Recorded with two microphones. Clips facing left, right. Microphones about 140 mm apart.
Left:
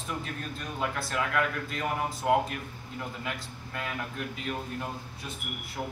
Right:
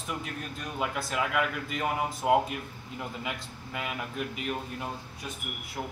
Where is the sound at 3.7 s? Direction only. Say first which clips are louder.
Right 1 dB; 15° right (ahead or behind).